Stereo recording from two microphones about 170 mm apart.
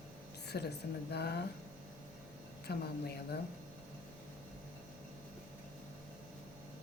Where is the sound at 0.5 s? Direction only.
70° left (ahead or behind).